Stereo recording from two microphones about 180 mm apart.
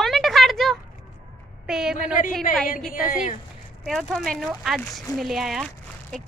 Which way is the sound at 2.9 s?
50° left (ahead or behind).